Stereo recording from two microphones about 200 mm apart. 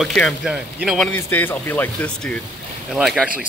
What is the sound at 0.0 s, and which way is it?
Speech, centre (ahead or behind).